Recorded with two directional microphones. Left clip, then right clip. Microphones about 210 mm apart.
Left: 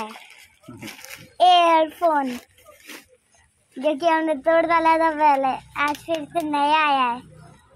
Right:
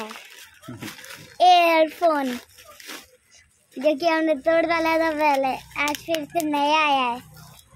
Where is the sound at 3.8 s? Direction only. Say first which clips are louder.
Even; 10° right (ahead or behind).